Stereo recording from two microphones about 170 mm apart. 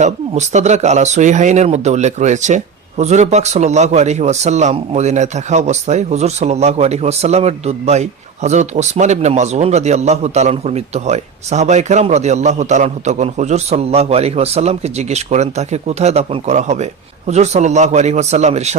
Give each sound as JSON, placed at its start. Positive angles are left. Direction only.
{"t": 0.0, "sound": "a man's voice", "side_deg": -45}